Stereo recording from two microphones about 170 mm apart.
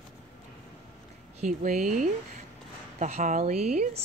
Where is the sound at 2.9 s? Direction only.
45° right (ahead or behind).